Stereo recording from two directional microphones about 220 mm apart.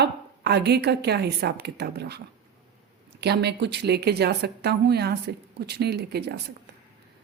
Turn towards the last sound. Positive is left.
turn(degrees=-50)  # may be behind; listen again after turning